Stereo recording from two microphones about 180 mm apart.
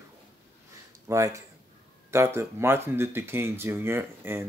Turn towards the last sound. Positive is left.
turn(degrees=-10)  # may be behind; listen again after turning